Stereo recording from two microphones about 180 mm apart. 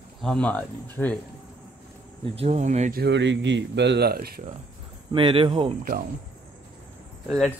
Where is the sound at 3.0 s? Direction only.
80° right; by 4.4 s 60° right (ahead or behind).